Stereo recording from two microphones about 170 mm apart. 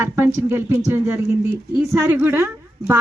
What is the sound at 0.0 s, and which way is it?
A woman's voice, 15° right (ahead or behind).